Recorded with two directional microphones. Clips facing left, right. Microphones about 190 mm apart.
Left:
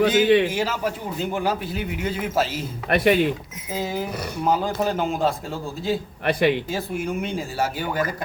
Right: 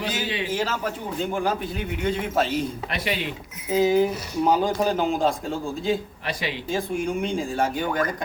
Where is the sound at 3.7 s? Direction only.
Centre (ahead or behind).